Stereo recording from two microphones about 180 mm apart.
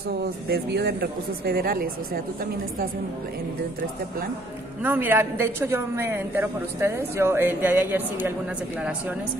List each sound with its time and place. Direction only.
0.2 s speech: 65° right (ahead or behind)
4.8 s a woman's voice: 10° right (ahead or behind)